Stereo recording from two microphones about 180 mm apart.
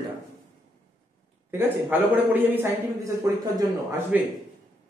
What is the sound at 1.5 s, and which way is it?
A man's voice, 10° right (ahead or behind).